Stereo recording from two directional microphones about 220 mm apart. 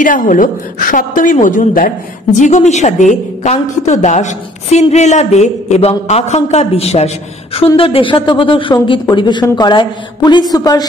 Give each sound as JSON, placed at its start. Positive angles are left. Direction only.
{"t": 0.0, "sound": "a woman's voice", "side_deg": 35}